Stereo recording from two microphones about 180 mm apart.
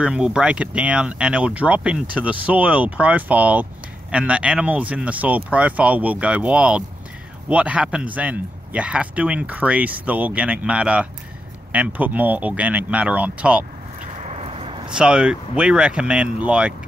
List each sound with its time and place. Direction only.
0.0 s a man's voice: 5° right (ahead or behind)
13.9 s a sound: 40° right (ahead or behind)
14.9 s speech: 5° right (ahead or behind)